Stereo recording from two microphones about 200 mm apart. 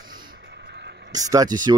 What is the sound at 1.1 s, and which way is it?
Speech, 15° right (ahead or behind).